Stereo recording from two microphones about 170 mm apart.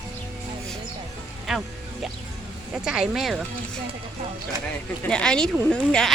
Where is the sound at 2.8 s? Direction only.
5° right (ahead or behind).